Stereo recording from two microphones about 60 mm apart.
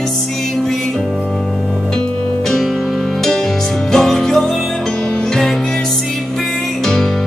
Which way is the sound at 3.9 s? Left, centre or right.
Centre.